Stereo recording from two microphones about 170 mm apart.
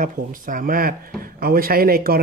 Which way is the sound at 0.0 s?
55° right (ahead or behind).